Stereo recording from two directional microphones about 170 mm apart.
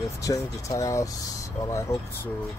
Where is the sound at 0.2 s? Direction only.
20° left (ahead or behind).